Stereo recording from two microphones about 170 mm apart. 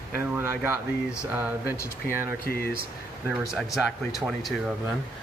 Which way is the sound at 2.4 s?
65° left (ahead or behind).